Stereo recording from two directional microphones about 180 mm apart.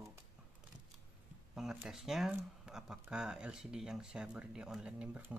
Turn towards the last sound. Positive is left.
turn(degrees=-5)  # may be behind; listen again after turning